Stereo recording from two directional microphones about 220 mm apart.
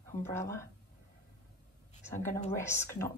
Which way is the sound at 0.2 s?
10° left (ahead or behind).